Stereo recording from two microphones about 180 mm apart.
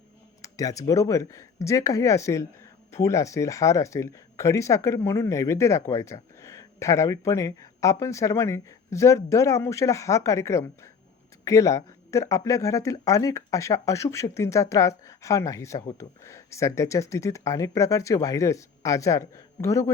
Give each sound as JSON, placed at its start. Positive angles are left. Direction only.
{"t": 0.4, "sound": "speech", "side_deg": 20}